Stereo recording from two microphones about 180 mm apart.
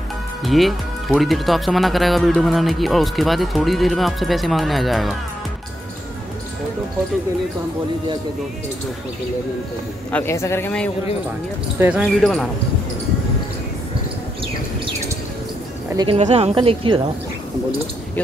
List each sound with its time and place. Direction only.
0.4 s speech: centre (ahead or behind)
10.1 s speech: 15° left (ahead or behind)
11.8 s speech: 5° right (ahead or behind)
16.2 s speech: 40° right (ahead or behind)